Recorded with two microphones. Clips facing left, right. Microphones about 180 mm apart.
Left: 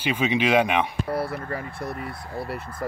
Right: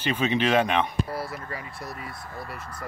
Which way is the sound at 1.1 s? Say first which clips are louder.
Left 6 dB; 60° left (ahead or behind).